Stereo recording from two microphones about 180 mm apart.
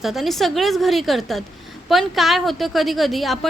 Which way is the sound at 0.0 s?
Centre (ahead or behind).